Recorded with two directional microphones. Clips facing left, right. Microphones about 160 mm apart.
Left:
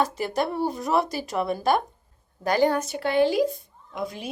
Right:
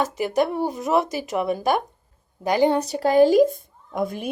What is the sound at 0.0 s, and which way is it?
Speech, 15° right (ahead or behind).